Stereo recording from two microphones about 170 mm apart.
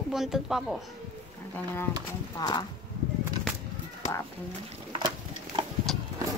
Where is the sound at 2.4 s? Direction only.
25° left (ahead or behind).